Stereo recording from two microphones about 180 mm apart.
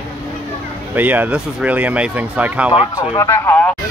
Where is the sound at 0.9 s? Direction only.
10° right (ahead or behind).